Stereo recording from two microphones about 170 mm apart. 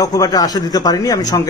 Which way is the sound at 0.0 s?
20° left (ahead or behind).